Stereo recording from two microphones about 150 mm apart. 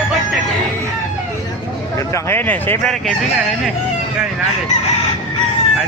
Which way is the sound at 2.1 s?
15° left (ahead or behind).